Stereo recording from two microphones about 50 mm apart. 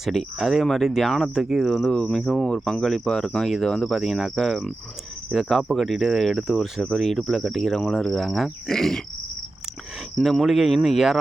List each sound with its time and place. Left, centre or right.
0.0 s speech: centre
1.9 s speech: centre
2.1 s speech: centre
2.4 s speech: centre
2.8 s speech: centre
10.2 s speech: centre